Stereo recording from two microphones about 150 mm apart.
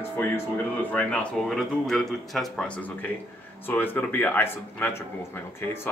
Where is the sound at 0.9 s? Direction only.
10° left (ahead or behind).